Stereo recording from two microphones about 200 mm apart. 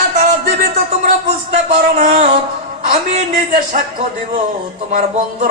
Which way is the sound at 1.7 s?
45° right (ahead or behind).